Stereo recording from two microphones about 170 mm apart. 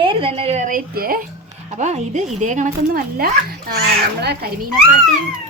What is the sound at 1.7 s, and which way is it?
A woman's voice, 40° right (ahead or behind).